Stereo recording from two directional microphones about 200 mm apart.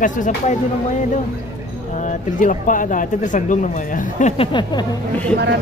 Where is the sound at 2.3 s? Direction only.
40° left (ahead or behind).